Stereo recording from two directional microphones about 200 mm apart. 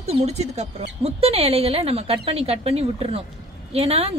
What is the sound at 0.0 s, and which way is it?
A woman's voice, 35° right (ahead or behind).